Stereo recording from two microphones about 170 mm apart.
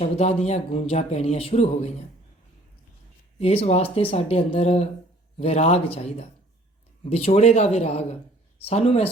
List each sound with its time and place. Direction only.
0.0 s speech: 35° left (ahead or behind)
3.3 s speech: 35° left (ahead or behind)